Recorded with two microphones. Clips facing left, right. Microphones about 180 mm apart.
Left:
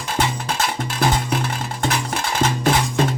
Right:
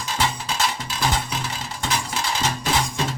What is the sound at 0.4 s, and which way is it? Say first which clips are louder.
Music: left 3 dB; 55° left (ahead or behind).